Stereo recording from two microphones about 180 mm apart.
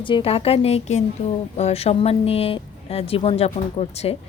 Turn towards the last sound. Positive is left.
turn(degrees=35)  # may be behind; listen again after turning